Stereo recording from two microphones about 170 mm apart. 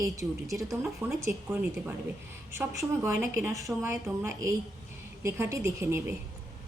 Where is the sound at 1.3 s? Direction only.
15° right (ahead or behind).